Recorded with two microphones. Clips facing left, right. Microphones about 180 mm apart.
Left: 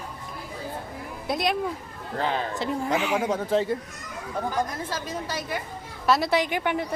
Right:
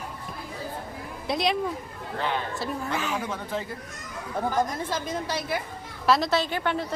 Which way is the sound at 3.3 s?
35° left (ahead or behind).